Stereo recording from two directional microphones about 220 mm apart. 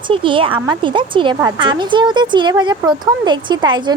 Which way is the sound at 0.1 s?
25° right (ahead or behind).